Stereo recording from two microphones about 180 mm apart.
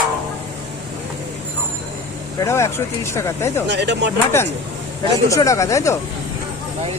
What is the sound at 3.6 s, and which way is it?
Speech, 75° right (ahead or behind).